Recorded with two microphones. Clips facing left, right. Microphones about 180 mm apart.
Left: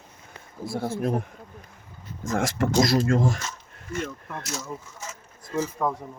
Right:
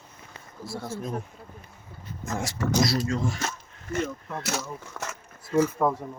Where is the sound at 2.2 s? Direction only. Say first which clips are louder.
Left 6 dB; 90° left.